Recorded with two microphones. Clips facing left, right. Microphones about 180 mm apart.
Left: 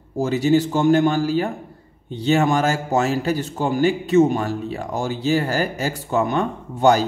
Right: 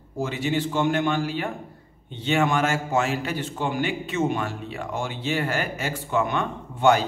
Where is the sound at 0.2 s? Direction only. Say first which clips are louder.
Left 8 dB; 40° left (ahead or behind).